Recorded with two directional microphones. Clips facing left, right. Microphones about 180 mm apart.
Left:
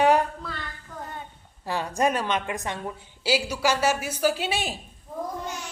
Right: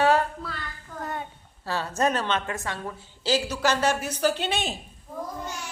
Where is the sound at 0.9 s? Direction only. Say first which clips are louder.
Right 3 dB; centre (ahead or behind).